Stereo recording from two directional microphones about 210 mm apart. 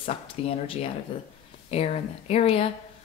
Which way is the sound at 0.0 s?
25° left (ahead or behind).